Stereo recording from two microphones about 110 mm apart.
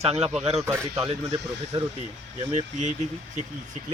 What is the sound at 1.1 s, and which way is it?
Speech, 50° right (ahead or behind).